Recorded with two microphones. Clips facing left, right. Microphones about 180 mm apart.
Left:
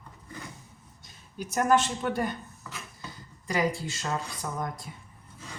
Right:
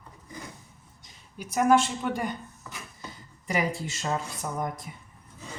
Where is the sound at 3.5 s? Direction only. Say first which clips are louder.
Left 1 dB; 20° right (ahead or behind).